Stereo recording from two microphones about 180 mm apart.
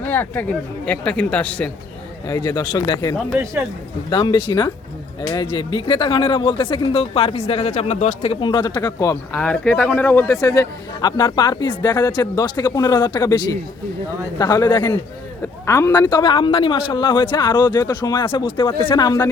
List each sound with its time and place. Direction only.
0.0 s speech: 10° left (ahead or behind)
2.2 s speech: 20° left (ahead or behind)
3.2 s speech: 10° right (ahead or behind)
4.1 s speech: 25° left (ahead or behind)
9.4 s speech: 5° left (ahead or behind); by 19.3 s 20° left (ahead or behind)